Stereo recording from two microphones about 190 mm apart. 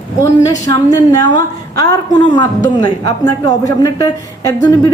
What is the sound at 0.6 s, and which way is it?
A woman's voice, 20° left (ahead or behind).